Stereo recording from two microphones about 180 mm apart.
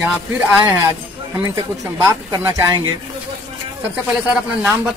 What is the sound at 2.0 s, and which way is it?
Speech, 15° right (ahead or behind).